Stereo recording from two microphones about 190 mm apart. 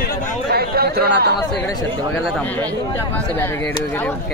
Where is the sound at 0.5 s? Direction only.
55° right (ahead or behind).